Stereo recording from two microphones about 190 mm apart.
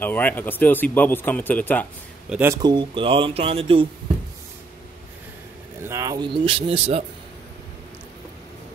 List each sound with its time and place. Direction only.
0.0 s speech: 10° left (ahead or behind)
2.2 s speech: 5° right (ahead or behind)
2.5 s speech: 25° right (ahead or behind)
5.9 s speech: 15° right (ahead or behind)